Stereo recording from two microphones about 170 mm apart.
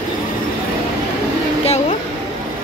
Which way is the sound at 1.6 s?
40° left (ahead or behind).